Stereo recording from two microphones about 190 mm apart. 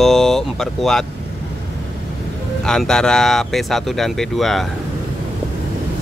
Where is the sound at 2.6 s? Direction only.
5° left (ahead or behind).